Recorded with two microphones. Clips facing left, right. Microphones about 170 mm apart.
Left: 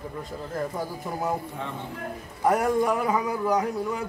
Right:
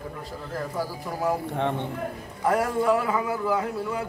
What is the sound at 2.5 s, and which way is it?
A man's voice, 20° left (ahead or behind).